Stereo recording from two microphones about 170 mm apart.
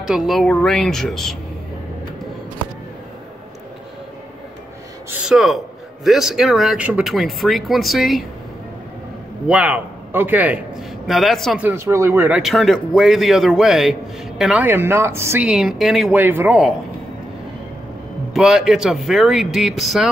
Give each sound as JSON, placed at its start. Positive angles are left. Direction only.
{"t": 0.0, "sound": "speech", "side_deg": -5}
{"t": 5.1, "sound": "a man's voice", "side_deg": -5}
{"t": 9.5, "sound": "a man's voice", "side_deg": -10}
{"t": 11.6, "sound": "speech", "side_deg": -15}
{"t": 12.4, "sound": "speech", "side_deg": 0}
{"t": 18.3, "sound": "speech", "side_deg": 0}